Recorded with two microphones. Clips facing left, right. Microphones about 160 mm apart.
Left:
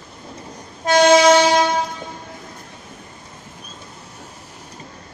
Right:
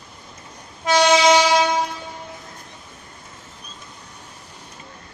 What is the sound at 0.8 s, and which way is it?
Train, 50° left (ahead or behind).